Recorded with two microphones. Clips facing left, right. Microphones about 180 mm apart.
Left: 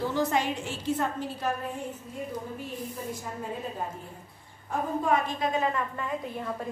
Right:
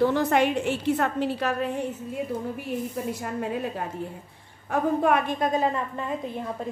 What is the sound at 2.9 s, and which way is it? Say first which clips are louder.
A woman's voice: right 6 dB; 70° right (ahead or behind).